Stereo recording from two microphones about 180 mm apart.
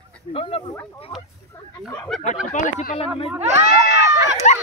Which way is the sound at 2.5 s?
45° left (ahead or behind).